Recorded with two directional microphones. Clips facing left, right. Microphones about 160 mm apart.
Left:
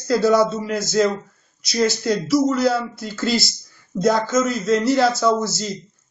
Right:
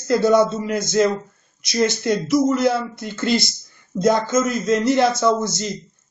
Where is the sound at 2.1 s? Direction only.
20° right (ahead or behind).